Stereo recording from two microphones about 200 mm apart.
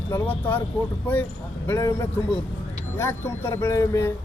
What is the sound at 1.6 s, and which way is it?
Speech, 15° left (ahead or behind).